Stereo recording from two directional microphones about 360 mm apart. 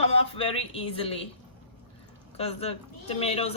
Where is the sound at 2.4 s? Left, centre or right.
Centre.